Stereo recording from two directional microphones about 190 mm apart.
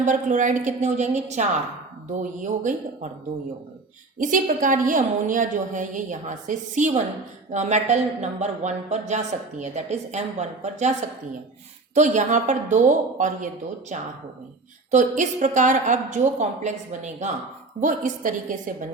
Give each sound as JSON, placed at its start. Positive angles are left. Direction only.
{"t": 0.0, "sound": "a woman's voice", "side_deg": -40}
{"t": 4.2, "sound": "a woman's voice", "side_deg": -45}
{"t": 11.9, "sound": "a woman's voice", "side_deg": -40}